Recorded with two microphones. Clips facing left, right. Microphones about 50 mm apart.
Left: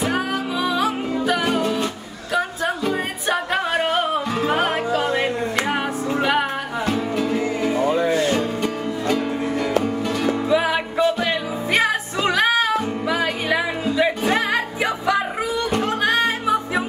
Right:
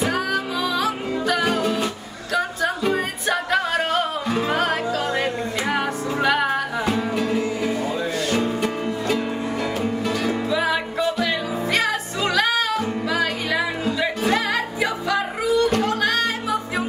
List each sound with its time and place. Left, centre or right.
0.1 s music: centre
3.3 s music: centre
6.4 s music: centre
7.8 s music: left
8.1 s music: left
8.4 s music: centre
10.5 s music: left